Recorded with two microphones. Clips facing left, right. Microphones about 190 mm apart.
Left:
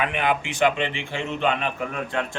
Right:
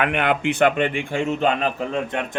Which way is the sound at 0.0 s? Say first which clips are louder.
Right 4 dB; 60° right (ahead or behind).